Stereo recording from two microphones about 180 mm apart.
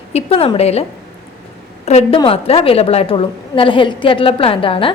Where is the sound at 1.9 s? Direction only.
35° left (ahead or behind).